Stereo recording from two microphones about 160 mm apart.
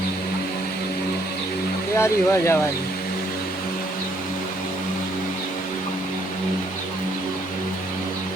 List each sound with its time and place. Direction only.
2.0 s speech: 15° left (ahead or behind)